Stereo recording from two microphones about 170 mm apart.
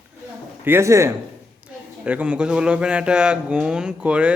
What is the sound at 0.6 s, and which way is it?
A man's voice, 15° right (ahead or behind).